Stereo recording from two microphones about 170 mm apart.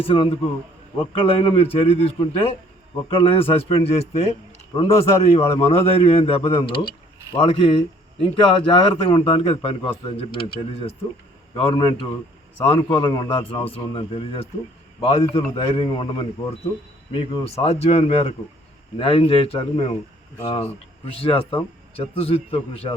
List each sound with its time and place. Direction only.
0.0 s a man's voice: 30° left (ahead or behind)